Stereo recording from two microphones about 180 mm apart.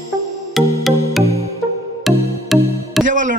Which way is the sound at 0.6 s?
Centre (ahead or behind).